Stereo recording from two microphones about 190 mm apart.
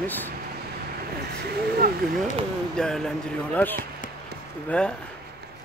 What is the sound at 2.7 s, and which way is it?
Speech, 5° left (ahead or behind).